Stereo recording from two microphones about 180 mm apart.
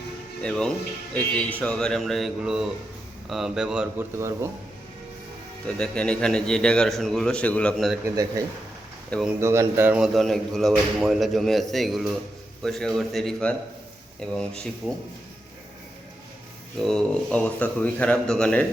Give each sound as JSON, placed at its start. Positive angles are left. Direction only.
{"t": 0.4, "sound": "a man's voice", "side_deg": 5}
{"t": 4.2, "sound": "a man's voice", "side_deg": -15}
{"t": 5.6, "sound": "a man's voice", "side_deg": 5}
{"t": 8.1, "sound": "speech", "side_deg": -20}
{"t": 9.0, "sound": "a man's voice", "side_deg": 5}
{"t": 9.4, "sound": "a man's voice", "side_deg": -15}
{"t": 16.7, "sound": "a man's voice", "side_deg": 0}